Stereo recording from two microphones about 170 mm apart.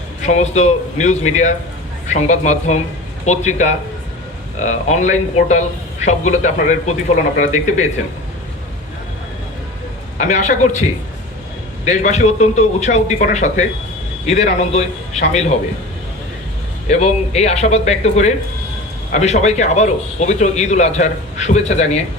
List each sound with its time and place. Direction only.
0.2 s a man's voice: 40° left (ahead or behind)
10.2 s a man's voice: 45° left (ahead or behind)
11.9 s a man's voice: 40° left (ahead or behind)
16.9 s a man's voice: 40° left (ahead or behind)